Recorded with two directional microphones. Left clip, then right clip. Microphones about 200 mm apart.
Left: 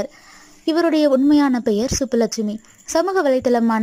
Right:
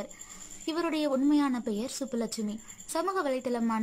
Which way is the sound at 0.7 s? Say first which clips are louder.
Left 14 dB; 30° left (ahead or behind).